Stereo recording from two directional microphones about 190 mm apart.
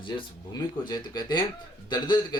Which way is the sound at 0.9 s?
25° left (ahead or behind).